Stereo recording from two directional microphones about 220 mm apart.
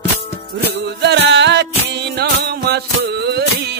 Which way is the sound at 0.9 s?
50° right (ahead or behind).